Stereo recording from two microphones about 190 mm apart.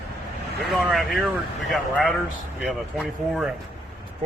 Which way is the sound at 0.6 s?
Centre (ahead or behind).